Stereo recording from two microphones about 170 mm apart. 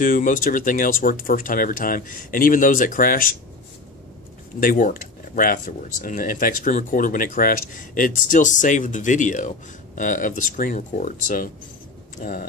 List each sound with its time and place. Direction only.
0.0 s speech: 55° left (ahead or behind)
4.6 s speech: 55° left (ahead or behind)